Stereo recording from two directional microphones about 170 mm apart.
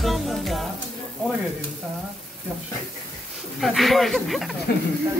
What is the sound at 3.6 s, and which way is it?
Speech, centre (ahead or behind).